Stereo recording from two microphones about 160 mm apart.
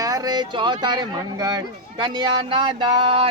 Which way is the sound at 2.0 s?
30° right (ahead or behind).